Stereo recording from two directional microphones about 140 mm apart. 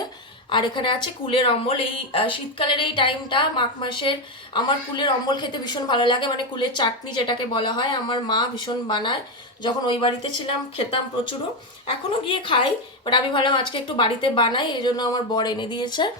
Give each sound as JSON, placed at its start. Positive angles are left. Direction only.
{"t": 0.5, "sound": "a woman's voice", "side_deg": 35}
{"t": 12.2, "sound": "a woman's voice", "side_deg": 40}